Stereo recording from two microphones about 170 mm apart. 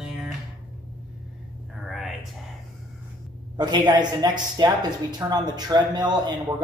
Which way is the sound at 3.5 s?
25° right (ahead or behind).